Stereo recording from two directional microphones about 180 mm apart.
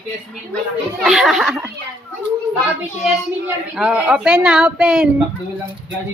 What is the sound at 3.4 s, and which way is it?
A woman's voice, 5° right (ahead or behind).